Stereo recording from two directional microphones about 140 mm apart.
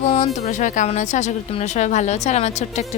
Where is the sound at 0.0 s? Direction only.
55° left (ahead or behind).